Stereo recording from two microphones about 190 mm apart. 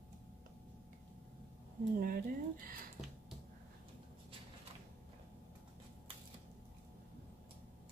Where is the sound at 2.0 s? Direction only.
50° right (ahead or behind).